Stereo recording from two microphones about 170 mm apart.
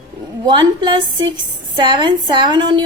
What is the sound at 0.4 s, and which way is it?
A woman's voice, 25° right (ahead or behind).